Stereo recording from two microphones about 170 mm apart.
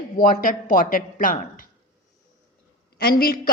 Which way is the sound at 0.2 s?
55° left (ahead or behind).